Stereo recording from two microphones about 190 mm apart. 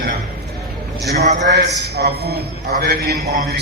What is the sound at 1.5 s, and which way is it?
A man's voice, 60° right (ahead or behind).